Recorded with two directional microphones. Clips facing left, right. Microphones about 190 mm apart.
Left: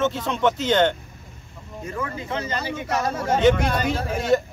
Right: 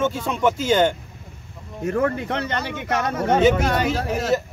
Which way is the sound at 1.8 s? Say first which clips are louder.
Right 9 dB; 65° right (ahead or behind).